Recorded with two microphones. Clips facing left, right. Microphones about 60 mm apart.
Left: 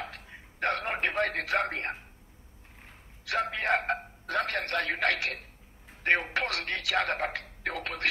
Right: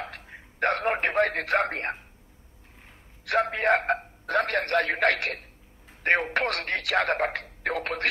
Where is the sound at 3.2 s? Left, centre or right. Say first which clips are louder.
Right 6 dB; right.